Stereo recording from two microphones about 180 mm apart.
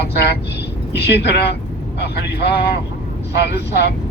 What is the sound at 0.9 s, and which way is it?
Speech, 70° left (ahead or behind).